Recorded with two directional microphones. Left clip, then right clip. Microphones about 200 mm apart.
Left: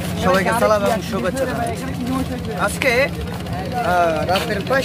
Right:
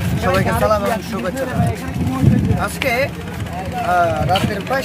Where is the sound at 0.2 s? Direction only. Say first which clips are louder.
Left 1 dB; 15° left (ahead or behind).